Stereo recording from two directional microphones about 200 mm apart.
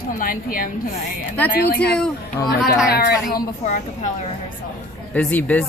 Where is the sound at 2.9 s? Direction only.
50° left (ahead or behind).